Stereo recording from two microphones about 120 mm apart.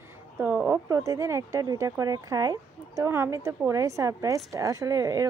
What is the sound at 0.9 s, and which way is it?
Speech, 30° right (ahead or behind).